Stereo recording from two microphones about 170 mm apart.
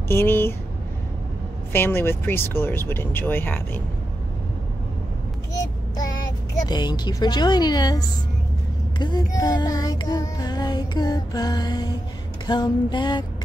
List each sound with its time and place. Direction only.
0.1 s speech: 15° left (ahead or behind)
1.7 s speech: 15° left (ahead or behind)
5.5 s child singing: 20° left (ahead or behind)